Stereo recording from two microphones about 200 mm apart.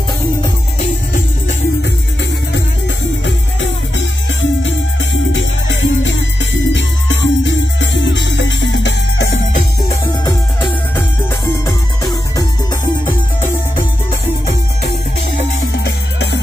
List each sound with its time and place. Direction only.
0.4 s music: 35° left (ahead or behind)
3.9 s music: 70° left (ahead or behind)
11.6 s music: 15° left (ahead or behind)
15.3 s music: 55° left (ahead or behind)